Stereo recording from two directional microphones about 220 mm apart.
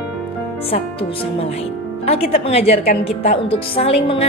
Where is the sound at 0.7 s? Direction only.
25° left (ahead or behind).